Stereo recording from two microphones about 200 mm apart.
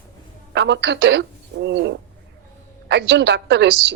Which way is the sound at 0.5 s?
60° right (ahead or behind).